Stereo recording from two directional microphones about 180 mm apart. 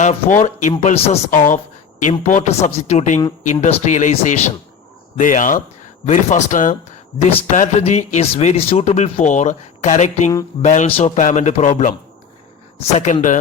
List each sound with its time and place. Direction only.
0.0 s speech: 45° left (ahead or behind)
1.3 s speech: 45° left (ahead or behind)